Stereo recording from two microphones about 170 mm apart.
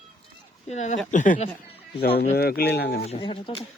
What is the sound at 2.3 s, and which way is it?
Speech, 65° left (ahead or behind).